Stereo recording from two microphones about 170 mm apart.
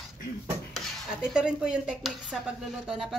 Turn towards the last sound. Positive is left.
turn(degrees=-5)  # may be behind; listen again after turning